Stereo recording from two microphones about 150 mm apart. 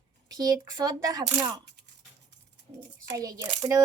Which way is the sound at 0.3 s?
25° right (ahead or behind).